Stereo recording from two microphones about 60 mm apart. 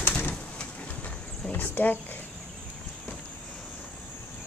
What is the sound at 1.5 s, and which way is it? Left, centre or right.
Speech, left.